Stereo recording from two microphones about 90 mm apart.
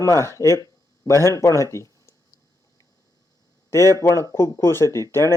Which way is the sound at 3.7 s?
35° left (ahead or behind).